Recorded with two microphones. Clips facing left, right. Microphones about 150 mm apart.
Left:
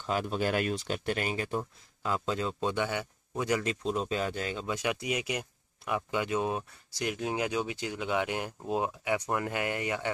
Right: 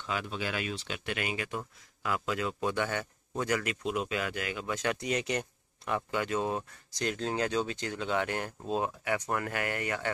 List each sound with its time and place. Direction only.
0.0 s a man's voice: 45° left (ahead or behind); by 4.6 s 30° left (ahead or behind)
4.6 s speech: 15° left (ahead or behind)